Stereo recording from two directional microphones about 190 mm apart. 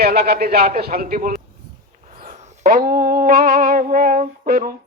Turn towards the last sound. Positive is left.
turn(degrees=-50)  # may be behind; listen again after turning